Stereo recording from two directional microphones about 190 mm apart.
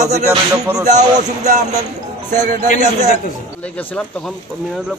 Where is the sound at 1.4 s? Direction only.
35° right (ahead or behind).